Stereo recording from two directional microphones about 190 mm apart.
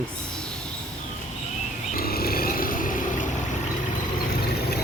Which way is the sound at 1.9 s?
55° left (ahead or behind).